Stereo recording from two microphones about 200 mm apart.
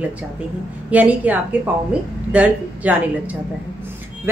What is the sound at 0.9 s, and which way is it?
A woman's voice, 10° right (ahead or behind).